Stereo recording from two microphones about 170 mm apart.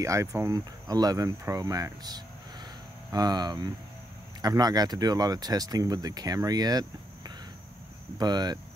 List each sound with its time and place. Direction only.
0.0 s speech: 15° right (ahead or behind)